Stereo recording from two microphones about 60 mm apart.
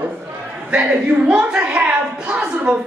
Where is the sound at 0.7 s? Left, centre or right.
Right.